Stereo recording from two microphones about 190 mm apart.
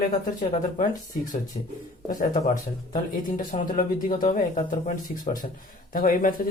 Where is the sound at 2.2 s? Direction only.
45° left (ahead or behind).